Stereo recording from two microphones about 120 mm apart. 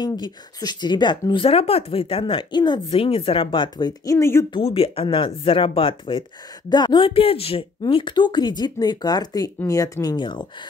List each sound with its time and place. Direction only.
0.0 s speech: 35° left (ahead or behind)
4.6 s speech: 50° left (ahead or behind)
7.9 s speech: 40° left (ahead or behind)